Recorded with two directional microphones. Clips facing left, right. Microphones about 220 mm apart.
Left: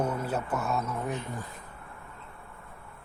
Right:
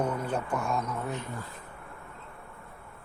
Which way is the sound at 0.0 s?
10° left (ahead or behind).